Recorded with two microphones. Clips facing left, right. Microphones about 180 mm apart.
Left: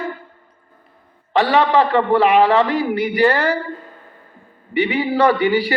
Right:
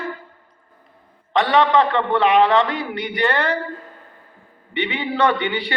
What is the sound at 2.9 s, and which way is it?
Speech, 35° left (ahead or behind).